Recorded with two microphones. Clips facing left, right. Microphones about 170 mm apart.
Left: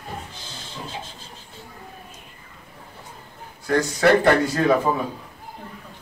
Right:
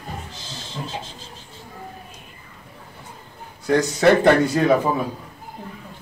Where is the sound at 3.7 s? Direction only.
20° right (ahead or behind).